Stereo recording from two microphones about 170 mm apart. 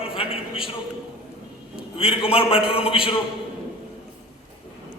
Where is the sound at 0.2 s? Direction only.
35° left (ahead or behind).